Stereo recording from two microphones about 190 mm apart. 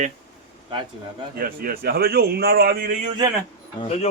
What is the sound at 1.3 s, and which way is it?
A man's voice, 50° right (ahead or behind).